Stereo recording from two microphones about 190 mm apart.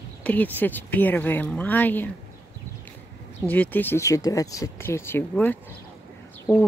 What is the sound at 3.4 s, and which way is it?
Speech, 10° left (ahead or behind).